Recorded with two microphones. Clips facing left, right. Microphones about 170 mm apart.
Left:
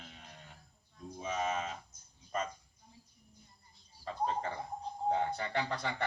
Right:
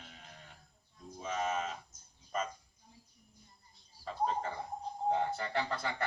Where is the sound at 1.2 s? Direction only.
Centre (ahead or behind).